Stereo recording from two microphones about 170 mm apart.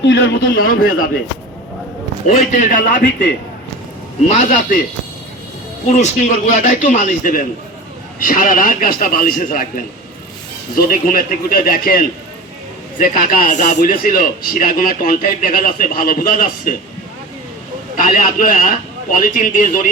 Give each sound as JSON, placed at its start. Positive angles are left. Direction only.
{"t": 0.0, "sound": "a man's voice", "side_deg": 90}
{"t": 2.2, "sound": "a man's voice", "side_deg": 45}
{"t": 3.0, "sound": "a man's voice", "side_deg": 75}
{"t": 4.3, "sound": "a man's voice", "side_deg": 45}
{"t": 5.9, "sound": "a man's voice", "side_deg": 45}
{"t": 17.9, "sound": "a man's voice", "side_deg": 50}